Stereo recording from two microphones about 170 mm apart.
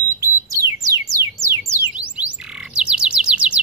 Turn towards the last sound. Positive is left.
turn(degrees=-5)  # may be behind; listen again after turning